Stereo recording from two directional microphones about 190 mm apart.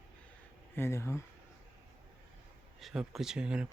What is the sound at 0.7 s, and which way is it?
Speech, 15° left (ahead or behind).